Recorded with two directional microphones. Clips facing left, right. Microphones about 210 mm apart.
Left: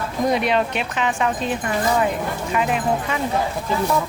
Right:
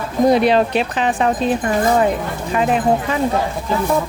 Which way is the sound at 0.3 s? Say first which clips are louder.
Right 6 dB; 35° right (ahead or behind).